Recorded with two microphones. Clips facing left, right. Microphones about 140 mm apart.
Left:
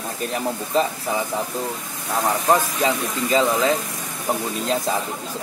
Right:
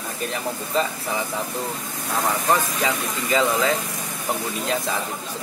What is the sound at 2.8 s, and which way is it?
Speech, 20° left (ahead or behind).